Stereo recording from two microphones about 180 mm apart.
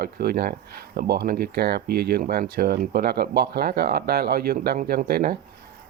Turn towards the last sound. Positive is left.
turn(degrees=-55)  # may be behind; listen again after turning